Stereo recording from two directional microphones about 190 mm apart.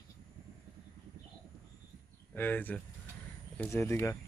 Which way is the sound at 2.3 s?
10° left (ahead or behind).